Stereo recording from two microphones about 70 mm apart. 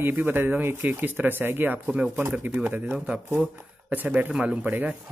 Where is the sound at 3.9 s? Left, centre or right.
Right.